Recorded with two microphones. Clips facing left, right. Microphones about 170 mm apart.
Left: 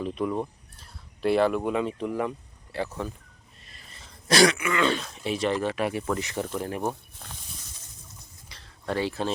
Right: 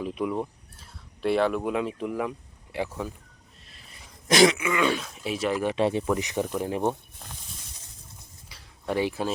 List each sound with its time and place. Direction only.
0.0 s speech: 5° right (ahead or behind)
2.7 s speech: 10° right (ahead or behind)
3.6 s speech: centre (ahead or behind)
5.6 s speech: 25° right (ahead or behind)
8.4 s a sound: 10° right (ahead or behind)